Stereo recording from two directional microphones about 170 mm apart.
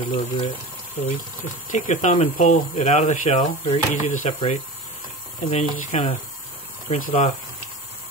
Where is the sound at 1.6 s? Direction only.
45° left (ahead or behind).